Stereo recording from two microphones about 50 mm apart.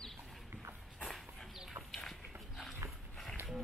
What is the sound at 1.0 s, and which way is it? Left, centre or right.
Dog, centre.